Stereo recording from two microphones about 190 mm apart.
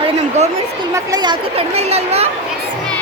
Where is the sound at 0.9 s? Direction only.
20° right (ahead or behind).